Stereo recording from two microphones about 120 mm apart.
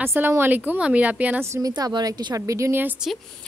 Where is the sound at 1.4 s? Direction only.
25° right (ahead or behind).